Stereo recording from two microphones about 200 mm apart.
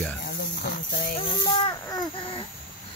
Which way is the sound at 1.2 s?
20° left (ahead or behind).